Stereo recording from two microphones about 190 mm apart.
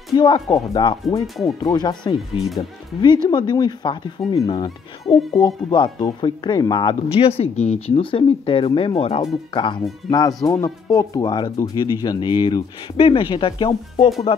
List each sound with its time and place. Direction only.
0.1 s speech: 20° left (ahead or behind)
1.2 s speech: centre (ahead or behind)
1.6 s speech: 20° left (ahead or behind)